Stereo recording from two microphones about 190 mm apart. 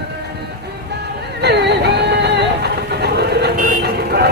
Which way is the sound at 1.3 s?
60° right (ahead or behind).